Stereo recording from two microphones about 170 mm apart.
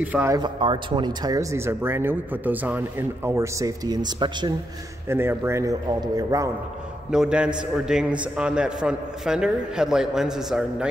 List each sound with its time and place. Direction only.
0.0 s a man's voice: 10° right (ahead or behind)
0.4 s speech: 30° right (ahead or behind)
5.0 s a man's voice: 15° right (ahead or behind)
7.1 s a man's voice: 5° right (ahead or behind)